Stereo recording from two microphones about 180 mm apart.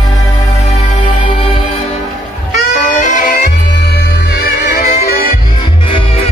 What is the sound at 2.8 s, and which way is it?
Music, 45° left (ahead or behind).